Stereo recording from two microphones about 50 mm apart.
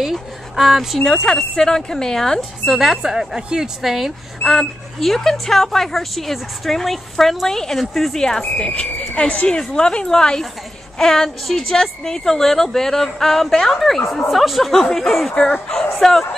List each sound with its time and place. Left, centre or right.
0.0 s a sound: centre
1.6 s a woman's voice: centre
2.6 s speech: centre
4.5 s a woman's voice: centre